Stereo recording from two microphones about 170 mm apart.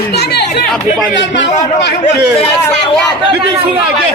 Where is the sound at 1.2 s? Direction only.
90° left.